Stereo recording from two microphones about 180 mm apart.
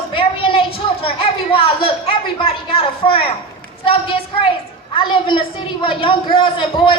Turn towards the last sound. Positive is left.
turn(degrees=25)  # may be behind; listen again after turning